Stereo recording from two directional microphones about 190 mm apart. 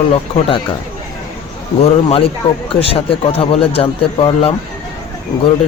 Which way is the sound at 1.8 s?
35° left (ahead or behind).